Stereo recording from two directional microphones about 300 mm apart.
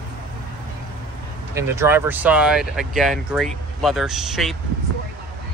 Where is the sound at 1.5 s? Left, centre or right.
Centre.